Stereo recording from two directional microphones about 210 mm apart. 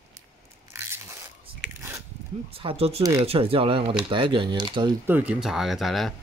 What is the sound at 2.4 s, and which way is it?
Speech, 25° right (ahead or behind).